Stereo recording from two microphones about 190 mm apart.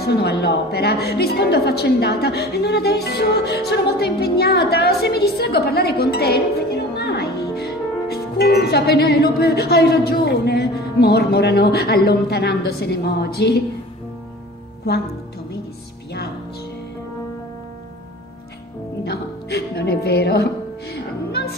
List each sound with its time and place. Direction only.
0.0 s a woman's voice: 60° left (ahead or behind)
7.0 s music: 60° left (ahead or behind)
8.1 s a woman's voice: 55° left (ahead or behind)
14.8 s a woman's voice: 55° left (ahead or behind)
19.0 s music: 55° left (ahead or behind)